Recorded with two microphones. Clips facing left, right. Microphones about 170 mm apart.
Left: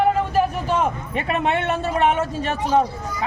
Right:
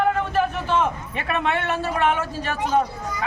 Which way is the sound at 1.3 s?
20° left (ahead or behind).